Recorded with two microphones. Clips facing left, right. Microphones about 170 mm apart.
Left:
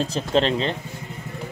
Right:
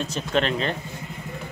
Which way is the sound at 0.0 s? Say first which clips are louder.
Left 3 dB; 30° left (ahead or behind).